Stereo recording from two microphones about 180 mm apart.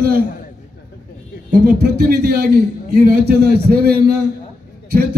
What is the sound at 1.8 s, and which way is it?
A man's voice, 60° right (ahead or behind).